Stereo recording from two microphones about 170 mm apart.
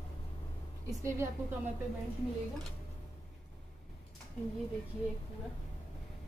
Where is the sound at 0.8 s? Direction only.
15° right (ahead or behind).